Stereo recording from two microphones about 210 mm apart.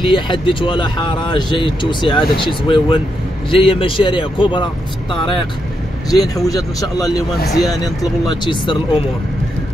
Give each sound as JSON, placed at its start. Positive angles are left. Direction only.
{"t": 0.0, "sound": "speech", "side_deg": 25}
{"t": 8.3, "sound": "speech", "side_deg": 25}